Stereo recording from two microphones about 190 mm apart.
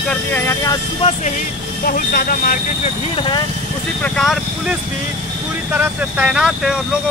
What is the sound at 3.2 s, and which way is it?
Speech, 25° left (ahead or behind).